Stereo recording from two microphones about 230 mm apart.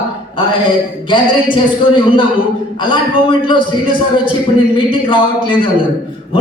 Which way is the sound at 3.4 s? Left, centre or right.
Left.